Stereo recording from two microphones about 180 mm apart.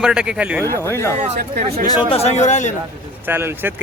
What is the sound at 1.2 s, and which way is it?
Speech, 55° right (ahead or behind).